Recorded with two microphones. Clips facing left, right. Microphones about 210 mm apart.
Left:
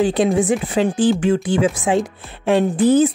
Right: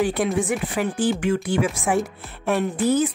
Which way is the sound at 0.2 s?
20° left (ahead or behind).